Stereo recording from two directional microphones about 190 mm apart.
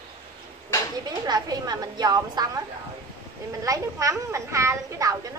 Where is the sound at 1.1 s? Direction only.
20° right (ahead or behind).